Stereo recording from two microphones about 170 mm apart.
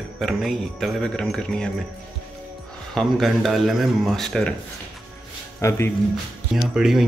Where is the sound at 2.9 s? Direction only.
Centre (ahead or behind).